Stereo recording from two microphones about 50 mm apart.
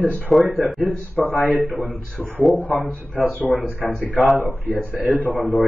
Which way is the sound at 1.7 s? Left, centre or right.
Left.